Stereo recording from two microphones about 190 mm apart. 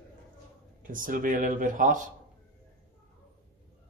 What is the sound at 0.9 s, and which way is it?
Speech, 45° right (ahead or behind).